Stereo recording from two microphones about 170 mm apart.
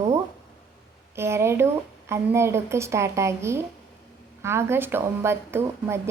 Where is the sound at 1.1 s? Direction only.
15° right (ahead or behind).